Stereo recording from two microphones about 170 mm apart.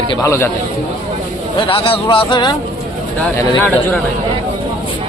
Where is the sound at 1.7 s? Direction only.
35° left (ahead or behind).